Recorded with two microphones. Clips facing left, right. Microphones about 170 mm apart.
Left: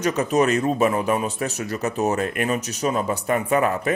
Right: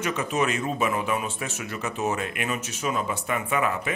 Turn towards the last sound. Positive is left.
turn(degrees=40)  # may be behind; listen again after turning